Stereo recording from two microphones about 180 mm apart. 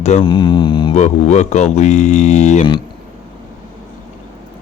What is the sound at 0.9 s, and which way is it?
Speech, 40° left (ahead or behind).